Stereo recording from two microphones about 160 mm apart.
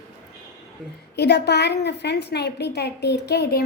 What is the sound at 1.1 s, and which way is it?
A woman's voice, 90° left.